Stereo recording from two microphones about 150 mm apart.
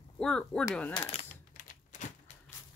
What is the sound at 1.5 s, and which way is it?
Typewriter, 60° left (ahead or behind).